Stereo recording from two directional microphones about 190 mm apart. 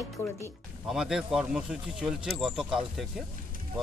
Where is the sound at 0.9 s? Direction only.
5° right (ahead or behind).